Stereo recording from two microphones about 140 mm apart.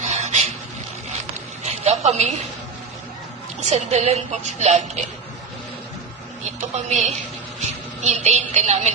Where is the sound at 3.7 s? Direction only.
50° right (ahead or behind).